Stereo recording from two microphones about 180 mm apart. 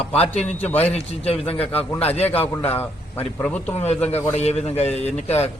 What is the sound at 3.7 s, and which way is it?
A man's voice, 35° left (ahead or behind).